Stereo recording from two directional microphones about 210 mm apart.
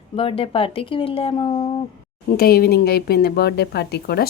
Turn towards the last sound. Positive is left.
turn(degrees=50)  # may be behind; listen again after turning